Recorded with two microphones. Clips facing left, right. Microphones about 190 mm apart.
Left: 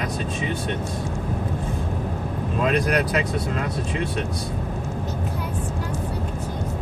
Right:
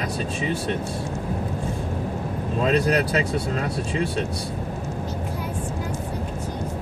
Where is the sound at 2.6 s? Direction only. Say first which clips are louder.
Right 1 dB; 30° right (ahead or behind).